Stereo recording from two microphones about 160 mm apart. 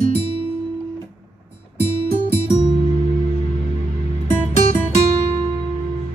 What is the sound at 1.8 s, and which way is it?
Music, 40° left (ahead or behind).